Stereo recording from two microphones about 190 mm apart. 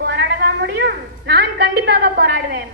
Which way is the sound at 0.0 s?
60° right (ahead or behind).